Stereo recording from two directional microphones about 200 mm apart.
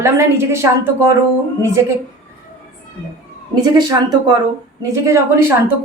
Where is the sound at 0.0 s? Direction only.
15° right (ahead or behind).